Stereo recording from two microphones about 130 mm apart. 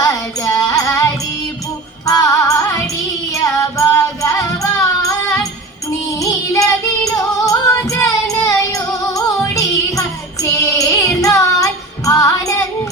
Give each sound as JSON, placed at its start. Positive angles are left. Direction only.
{"t": 0.0, "sound": "music", "side_deg": 25}